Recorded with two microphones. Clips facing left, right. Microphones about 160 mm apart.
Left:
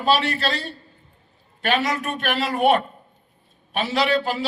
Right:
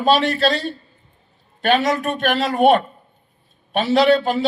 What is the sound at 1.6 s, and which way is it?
A man's voice, 35° right (ahead or behind).